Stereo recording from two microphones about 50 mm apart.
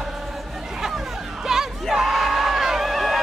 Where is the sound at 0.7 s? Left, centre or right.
Centre.